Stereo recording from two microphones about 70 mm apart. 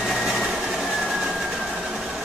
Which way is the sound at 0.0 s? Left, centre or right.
Centre.